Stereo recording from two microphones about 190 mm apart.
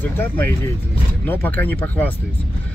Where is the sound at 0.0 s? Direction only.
10° left (ahead or behind).